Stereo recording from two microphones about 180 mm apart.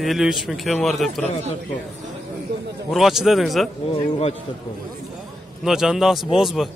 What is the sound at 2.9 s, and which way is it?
Speech, centre (ahead or behind).